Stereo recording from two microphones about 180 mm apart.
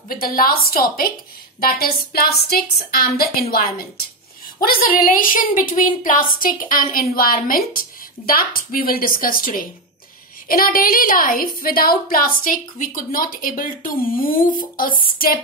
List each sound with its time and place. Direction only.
0.1 s a woman's voice: 55° left (ahead or behind)